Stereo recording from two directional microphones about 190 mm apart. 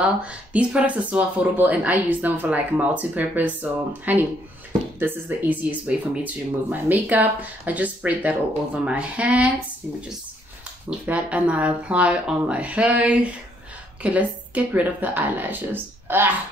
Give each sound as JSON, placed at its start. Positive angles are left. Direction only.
{"t": 0.0, "sound": "speech", "side_deg": -5}
{"t": 10.9, "sound": "speech", "side_deg": -5}